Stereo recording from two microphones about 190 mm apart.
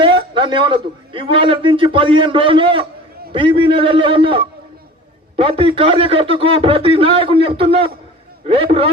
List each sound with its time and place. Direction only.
0.0 s a man's voice: 25° right (ahead or behind)
5.4 s a man's voice: 30° right (ahead or behind)